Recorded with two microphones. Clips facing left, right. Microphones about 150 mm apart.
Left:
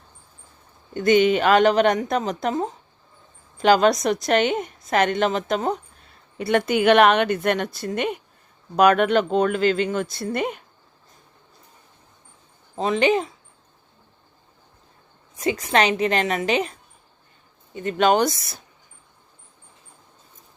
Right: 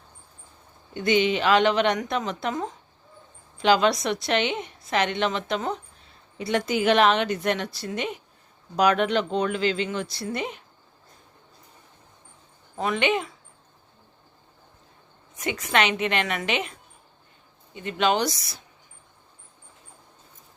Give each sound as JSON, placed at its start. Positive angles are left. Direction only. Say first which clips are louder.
{"t": 0.9, "sound": "a woman's voice", "louder": "left 5 dB", "side_deg": 50}
{"t": 6.3, "sound": "a woman's voice", "louder": "left 4 dB", "side_deg": 55}
{"t": 12.7, "sound": "speech", "louder": "left 5 dB", "side_deg": 30}
{"t": 15.4, "sound": "a woman's voice", "louder": "left 4 dB", "side_deg": 35}
{"t": 17.8, "sound": "a woman's voice", "louder": "left 5 dB", "side_deg": 45}